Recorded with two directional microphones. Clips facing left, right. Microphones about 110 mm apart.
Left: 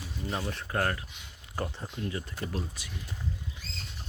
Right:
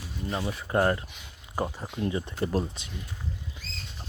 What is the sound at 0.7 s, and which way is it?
Speech, 25° right (ahead or behind).